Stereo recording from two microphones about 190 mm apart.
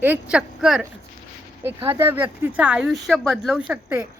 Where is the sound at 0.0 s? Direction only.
10° right (ahead or behind).